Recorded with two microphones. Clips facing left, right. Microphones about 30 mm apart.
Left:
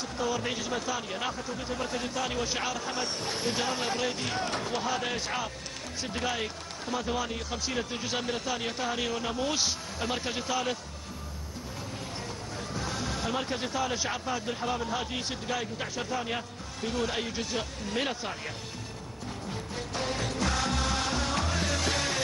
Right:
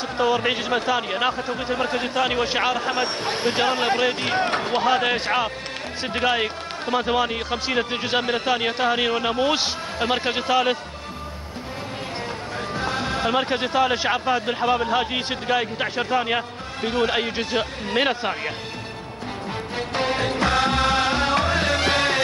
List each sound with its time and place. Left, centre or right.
0.2 s speech: right
12.7 s speech: right
19.7 s music: right